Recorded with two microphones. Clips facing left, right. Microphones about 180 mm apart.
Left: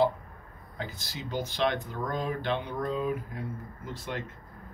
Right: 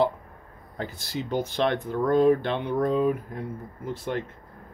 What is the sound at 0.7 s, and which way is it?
Speech, 55° right (ahead or behind).